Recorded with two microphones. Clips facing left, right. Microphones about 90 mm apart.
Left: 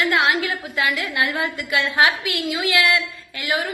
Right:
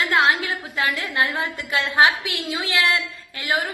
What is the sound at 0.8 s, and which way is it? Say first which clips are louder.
A woman's voice: left 1 dB; 35° right (ahead or behind).